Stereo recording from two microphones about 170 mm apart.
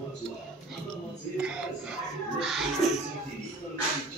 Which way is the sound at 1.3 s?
5° right (ahead or behind).